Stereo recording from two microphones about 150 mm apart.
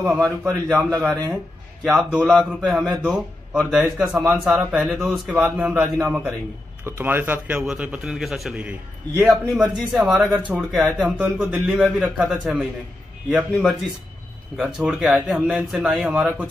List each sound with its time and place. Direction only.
0.0 s speech: centre (ahead or behind)
0.7 s a man's voice: 20° right (ahead or behind)
1.9 s a man's voice: 5° right (ahead or behind)
9.9 s a man's voice: centre (ahead or behind)